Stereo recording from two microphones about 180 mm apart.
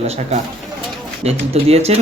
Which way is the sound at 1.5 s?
35° right (ahead or behind).